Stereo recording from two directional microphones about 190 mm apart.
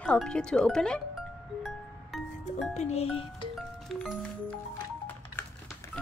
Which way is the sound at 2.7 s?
35° left (ahead or behind).